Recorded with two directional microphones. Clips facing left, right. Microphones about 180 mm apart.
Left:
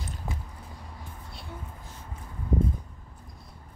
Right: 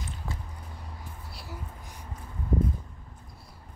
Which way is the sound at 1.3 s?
Centre (ahead or behind).